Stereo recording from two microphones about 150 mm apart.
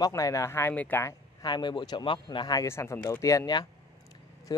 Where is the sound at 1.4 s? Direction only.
30° left (ahead or behind).